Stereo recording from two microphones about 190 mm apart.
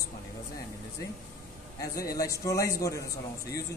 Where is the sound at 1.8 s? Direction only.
15° left (ahead or behind).